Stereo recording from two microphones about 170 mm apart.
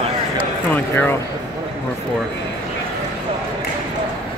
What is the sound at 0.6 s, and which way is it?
Speech, 10° left (ahead or behind).